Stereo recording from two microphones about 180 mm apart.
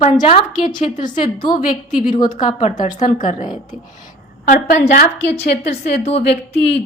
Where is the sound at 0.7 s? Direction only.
25° left (ahead or behind).